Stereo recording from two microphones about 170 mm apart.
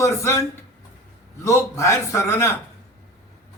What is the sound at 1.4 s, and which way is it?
A man's voice, 15° left (ahead or behind).